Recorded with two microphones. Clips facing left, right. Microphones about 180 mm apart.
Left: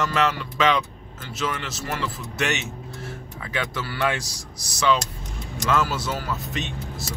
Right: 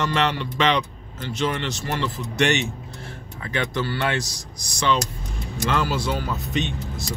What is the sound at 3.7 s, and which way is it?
Speech, 5° left (ahead or behind).